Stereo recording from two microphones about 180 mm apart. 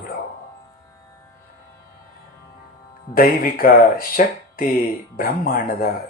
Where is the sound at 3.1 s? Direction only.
55° left (ahead or behind).